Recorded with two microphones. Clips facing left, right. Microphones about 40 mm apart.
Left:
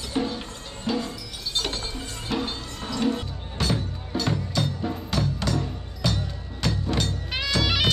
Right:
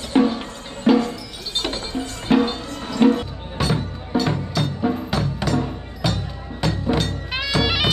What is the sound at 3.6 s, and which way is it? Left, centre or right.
Music, centre.